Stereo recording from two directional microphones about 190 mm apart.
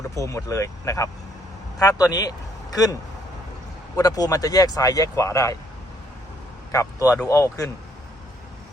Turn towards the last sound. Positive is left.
turn(degrees=15)  # may be behind; listen again after turning